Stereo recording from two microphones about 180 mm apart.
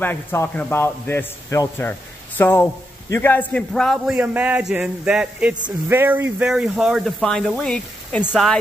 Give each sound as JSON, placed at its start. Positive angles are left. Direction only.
{"t": 0.0, "sound": "a man's voice", "side_deg": 10}